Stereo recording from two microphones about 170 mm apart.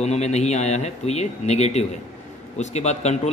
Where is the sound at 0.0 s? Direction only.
40° left (ahead or behind).